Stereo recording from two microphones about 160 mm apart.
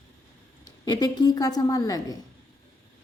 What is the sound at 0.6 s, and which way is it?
A woman's voice, 25° left (ahead or behind).